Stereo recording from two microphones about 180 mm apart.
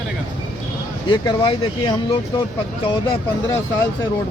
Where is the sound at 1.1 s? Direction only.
25° left (ahead or behind).